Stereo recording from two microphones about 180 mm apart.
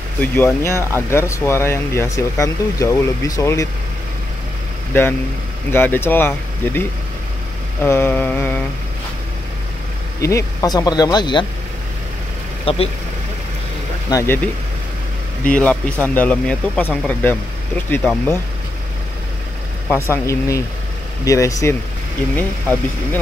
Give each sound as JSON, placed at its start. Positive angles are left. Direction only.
{"t": 0.2, "sound": "speech", "side_deg": 15}
{"t": 5.7, "sound": "speech", "side_deg": 10}
{"t": 10.2, "sound": "speech", "side_deg": 20}
{"t": 12.6, "sound": "speech", "side_deg": 35}
{"t": 14.1, "sound": "speech", "side_deg": 10}
{"t": 15.6, "sound": "speech", "side_deg": 10}
{"t": 19.9, "sound": "speech", "side_deg": 15}